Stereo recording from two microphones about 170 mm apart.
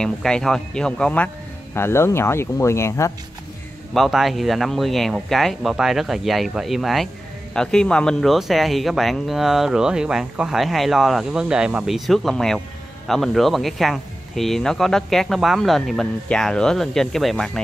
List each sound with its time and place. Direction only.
0.0 s speech: 5° left (ahead or behind)
3.9 s speech: centre (ahead or behind)